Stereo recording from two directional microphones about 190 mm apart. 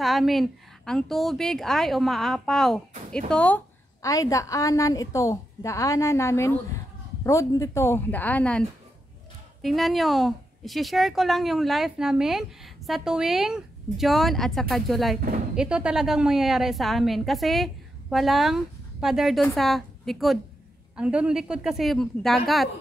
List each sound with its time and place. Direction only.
0.0 s a woman's voice: centre (ahead or behind)